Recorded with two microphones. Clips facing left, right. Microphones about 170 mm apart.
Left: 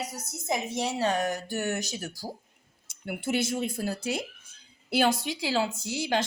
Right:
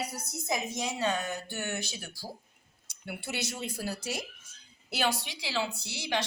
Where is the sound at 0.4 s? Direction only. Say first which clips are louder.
Left 4 dB; 30° left (ahead or behind).